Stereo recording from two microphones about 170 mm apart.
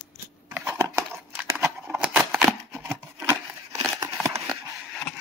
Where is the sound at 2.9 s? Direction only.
15° right (ahead or behind).